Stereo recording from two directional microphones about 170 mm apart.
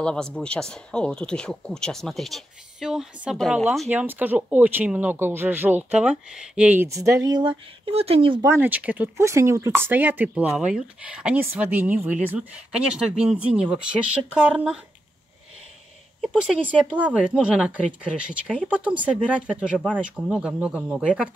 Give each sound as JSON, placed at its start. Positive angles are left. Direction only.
{"t": 0.0, "sound": "speech", "side_deg": 5}
{"t": 8.4, "sound": "speech", "side_deg": -15}
{"t": 16.2, "sound": "a woman's voice", "side_deg": -5}